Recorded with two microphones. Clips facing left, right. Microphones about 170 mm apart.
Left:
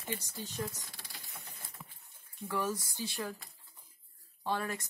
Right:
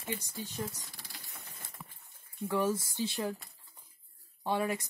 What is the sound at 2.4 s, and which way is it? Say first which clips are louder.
Speech: right 5 dB; 25° right (ahead or behind).